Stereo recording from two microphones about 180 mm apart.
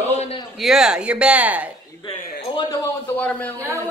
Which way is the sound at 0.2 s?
30° left (ahead or behind).